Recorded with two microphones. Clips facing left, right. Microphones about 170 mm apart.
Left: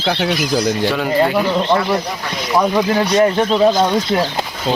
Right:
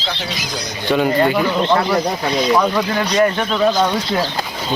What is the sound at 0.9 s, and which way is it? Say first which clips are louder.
Speech: right 5 dB; centre (ahead or behind).